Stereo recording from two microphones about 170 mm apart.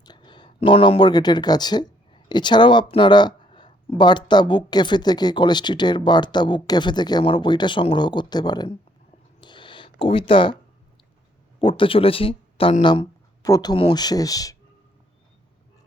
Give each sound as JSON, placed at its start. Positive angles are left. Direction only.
{"t": 0.0, "sound": "speech", "side_deg": 25}
{"t": 9.4, "sound": "a sound", "side_deg": 25}
{"t": 10.0, "sound": "speech", "side_deg": 30}
{"t": 11.6, "sound": "speech", "side_deg": 30}